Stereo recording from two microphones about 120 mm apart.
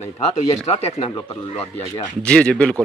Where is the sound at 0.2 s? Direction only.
60° left (ahead or behind).